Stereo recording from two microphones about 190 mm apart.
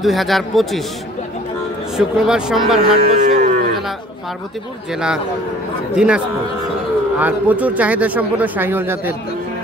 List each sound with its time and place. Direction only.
0.0 s speech: centre (ahead or behind)
2.0 s speech: 5° right (ahead or behind)
2.8 s speech: 55° right (ahead or behind)
3.3 s cattle: 40° right (ahead or behind)
5.9 s speech: 5° right (ahead or behind)